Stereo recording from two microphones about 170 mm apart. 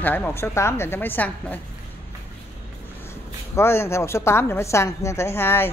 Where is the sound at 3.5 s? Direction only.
15° left (ahead or behind).